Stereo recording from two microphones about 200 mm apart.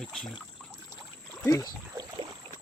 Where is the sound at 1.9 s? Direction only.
25° right (ahead or behind).